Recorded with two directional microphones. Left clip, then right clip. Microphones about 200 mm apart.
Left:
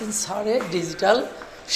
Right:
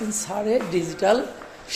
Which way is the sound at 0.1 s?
25° right (ahead or behind).